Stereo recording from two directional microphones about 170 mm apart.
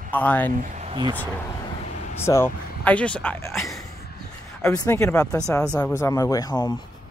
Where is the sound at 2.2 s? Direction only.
15° left (ahead or behind).